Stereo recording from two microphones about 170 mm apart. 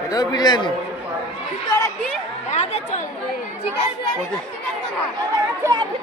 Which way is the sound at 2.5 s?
45° left (ahead or behind).